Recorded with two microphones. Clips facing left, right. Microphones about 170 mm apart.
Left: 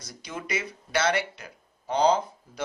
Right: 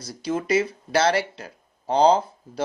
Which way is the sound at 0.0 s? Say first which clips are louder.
Right 11 dB; 30° right (ahead or behind).